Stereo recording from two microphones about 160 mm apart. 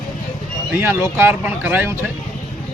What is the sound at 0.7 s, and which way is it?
Speech, 15° right (ahead or behind).